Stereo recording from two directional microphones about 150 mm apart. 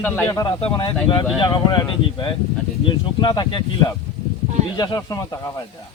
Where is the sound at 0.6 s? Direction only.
30° left (ahead or behind).